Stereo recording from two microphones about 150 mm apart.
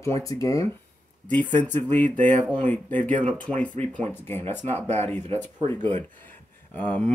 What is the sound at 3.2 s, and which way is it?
Speech, 10° left (ahead or behind).